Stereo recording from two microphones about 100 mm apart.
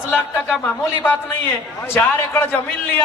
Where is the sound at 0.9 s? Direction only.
15° left (ahead or behind).